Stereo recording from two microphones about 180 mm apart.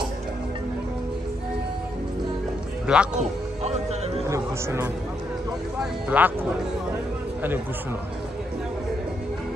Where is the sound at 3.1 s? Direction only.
40° right (ahead or behind).